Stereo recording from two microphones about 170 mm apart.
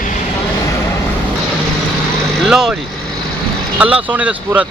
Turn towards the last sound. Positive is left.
turn(degrees=-10)  # may be behind; listen again after turning